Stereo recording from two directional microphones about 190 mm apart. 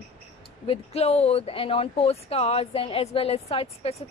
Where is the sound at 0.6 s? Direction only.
35° left (ahead or behind).